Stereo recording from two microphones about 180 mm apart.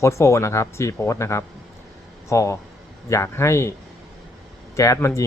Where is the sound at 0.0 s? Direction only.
15° left (ahead or behind).